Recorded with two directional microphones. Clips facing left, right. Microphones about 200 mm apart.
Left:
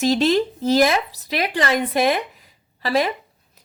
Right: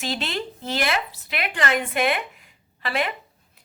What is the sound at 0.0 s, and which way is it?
Speech, 40° left (ahead or behind).